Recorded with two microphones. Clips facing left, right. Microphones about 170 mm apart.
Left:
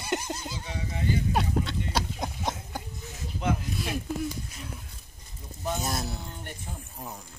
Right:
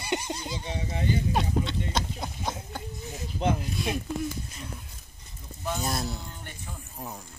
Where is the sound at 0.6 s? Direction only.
25° right (ahead or behind).